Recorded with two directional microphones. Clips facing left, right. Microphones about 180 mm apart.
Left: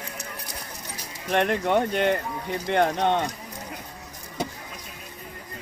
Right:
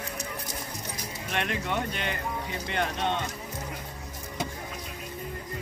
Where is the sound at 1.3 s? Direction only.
55° left (ahead or behind).